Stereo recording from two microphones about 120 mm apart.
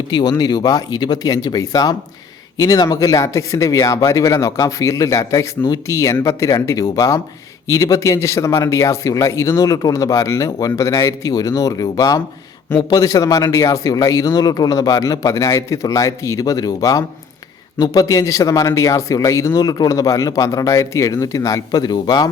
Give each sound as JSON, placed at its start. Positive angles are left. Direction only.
{"t": 0.1, "sound": "speech", "side_deg": 35}